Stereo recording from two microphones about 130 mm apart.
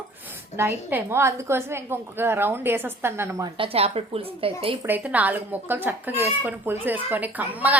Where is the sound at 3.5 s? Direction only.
45° right (ahead or behind).